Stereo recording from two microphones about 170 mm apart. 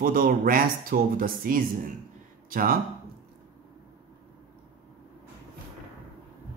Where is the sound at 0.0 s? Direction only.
55° right (ahead or behind).